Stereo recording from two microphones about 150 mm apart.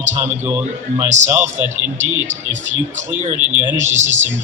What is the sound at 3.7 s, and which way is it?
Speech, 55° right (ahead or behind).